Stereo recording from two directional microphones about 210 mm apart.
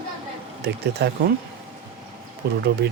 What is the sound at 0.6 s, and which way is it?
Speech, 50° right (ahead or behind).